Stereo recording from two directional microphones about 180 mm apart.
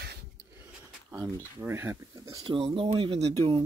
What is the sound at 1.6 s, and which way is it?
Speech, 15° right (ahead or behind).